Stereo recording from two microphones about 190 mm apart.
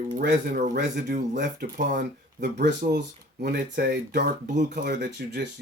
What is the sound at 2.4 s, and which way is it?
Speech, 45° right (ahead or behind).